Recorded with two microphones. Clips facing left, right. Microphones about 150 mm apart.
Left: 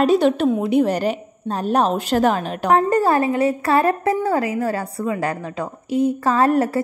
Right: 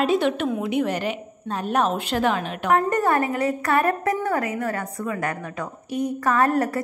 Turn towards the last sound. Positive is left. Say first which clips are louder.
# left 3 dB
turn(degrees=25)  # may be behind; listen again after turning